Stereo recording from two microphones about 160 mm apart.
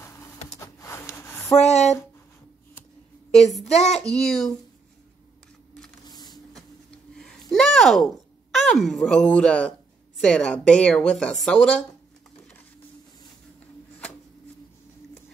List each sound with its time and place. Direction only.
0.6 s a sound: 20° left (ahead or behind)
1.6 s a sound: 45° left (ahead or behind)
3.3 s child singing: centre (ahead or behind)
3.6 s child singing: 45° left (ahead or behind)
4.0 s child singing: 5° left (ahead or behind)
6.0 s printer: 25° left (ahead or behind)
7.2 s speech: 5° left (ahead or behind)